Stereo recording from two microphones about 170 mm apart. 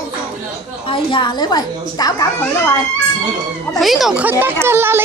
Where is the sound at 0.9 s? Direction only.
30° left (ahead or behind).